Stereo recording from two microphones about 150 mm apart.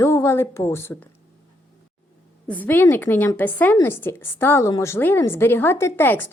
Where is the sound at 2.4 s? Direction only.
10° left (ahead or behind).